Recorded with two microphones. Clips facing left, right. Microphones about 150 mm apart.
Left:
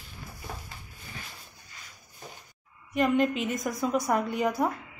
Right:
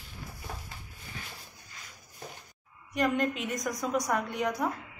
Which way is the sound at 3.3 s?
Centre (ahead or behind).